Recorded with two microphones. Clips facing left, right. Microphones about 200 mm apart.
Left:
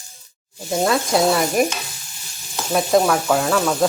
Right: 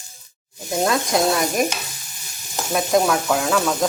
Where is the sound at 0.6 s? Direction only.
Centre (ahead or behind).